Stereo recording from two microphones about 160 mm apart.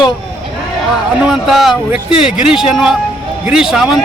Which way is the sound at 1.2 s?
5° right (ahead or behind).